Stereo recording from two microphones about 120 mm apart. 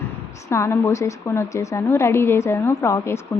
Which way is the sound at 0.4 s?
25° left (ahead or behind).